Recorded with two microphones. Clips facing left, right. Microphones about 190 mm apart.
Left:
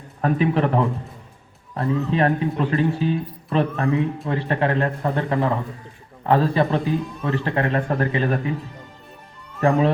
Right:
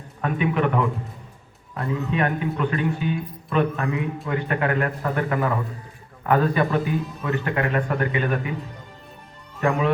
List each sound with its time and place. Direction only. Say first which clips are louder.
0.2 s speech: left 3 dB; 35° left (ahead or behind)
9.6 s speech: left 4 dB; 35° left (ahead or behind)